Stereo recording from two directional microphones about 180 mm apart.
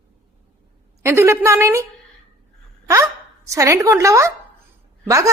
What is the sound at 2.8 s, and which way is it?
Speech, 15° right (ahead or behind).